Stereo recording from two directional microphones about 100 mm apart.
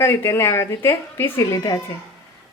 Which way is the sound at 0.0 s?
25° left (ahead or behind).